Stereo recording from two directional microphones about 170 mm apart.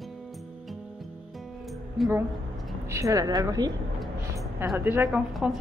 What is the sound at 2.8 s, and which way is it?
Speech, 20° right (ahead or behind).